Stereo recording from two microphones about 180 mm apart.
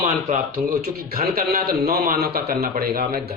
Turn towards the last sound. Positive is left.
turn(degrees=-55)  # may be behind; listen again after turning